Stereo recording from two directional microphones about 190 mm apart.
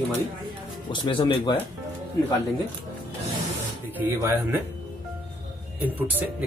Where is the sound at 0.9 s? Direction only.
25° left (ahead or behind).